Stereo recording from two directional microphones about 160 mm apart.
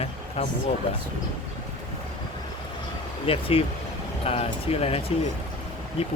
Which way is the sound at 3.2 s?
35° left (ahead or behind).